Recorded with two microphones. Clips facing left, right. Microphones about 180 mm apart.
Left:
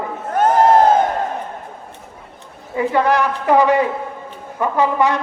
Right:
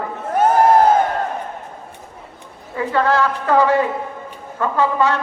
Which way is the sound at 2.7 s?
15° left (ahead or behind).